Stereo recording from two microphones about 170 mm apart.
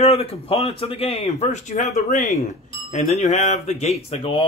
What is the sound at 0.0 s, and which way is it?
Speech, 35° left (ahead or behind).